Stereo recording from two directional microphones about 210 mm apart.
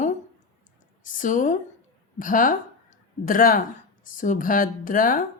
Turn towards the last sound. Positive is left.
turn(degrees=40)  # may be behind; listen again after turning